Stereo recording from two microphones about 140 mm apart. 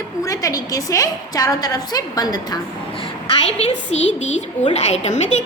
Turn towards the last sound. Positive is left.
turn(degrees=55)  # may be behind; listen again after turning